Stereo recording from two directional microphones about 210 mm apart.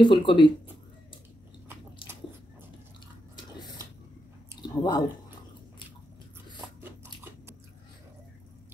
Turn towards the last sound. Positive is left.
turn(degrees=-10)  # may be behind; listen again after turning